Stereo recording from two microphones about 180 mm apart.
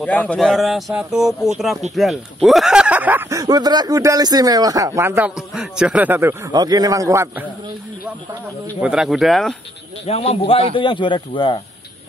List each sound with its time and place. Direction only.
0.0 s speech: 5° left (ahead or behind); by 7.4 s 15° right (ahead or behind)
8.8 s speech: 5° right (ahead or behind)
10.0 s a man's voice: 35° left (ahead or behind)